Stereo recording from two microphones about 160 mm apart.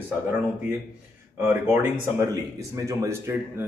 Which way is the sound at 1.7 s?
15° right (ahead or behind).